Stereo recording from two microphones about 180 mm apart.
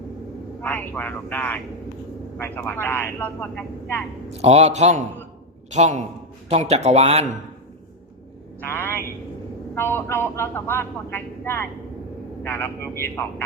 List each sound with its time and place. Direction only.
0.6 s speech: 10° left (ahead or behind)
4.4 s speech: 35° right (ahead or behind)
8.6 s a sound: 10° left (ahead or behind)
9.7 s speech: 15° left (ahead or behind)